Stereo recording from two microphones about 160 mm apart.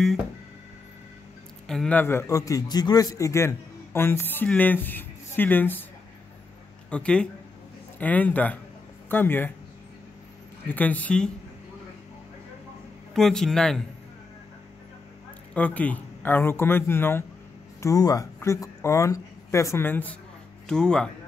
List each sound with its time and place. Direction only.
1.7 s a man's voice: 5° left (ahead or behind)
6.9 s a man's voice: 5° left (ahead or behind)
10.7 s a man's voice: 10° left (ahead or behind)
13.1 s a man's voice: 5° left (ahead or behind)
15.5 s a man's voice: 10° left (ahead or behind)